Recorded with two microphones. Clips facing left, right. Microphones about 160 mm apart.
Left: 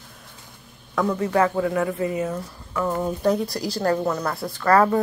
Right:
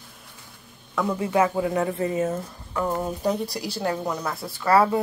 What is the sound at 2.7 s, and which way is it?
A woman's voice, 10° right (ahead or behind).